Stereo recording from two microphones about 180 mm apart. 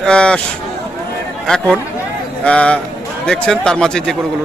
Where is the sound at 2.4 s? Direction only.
5° left (ahead or behind).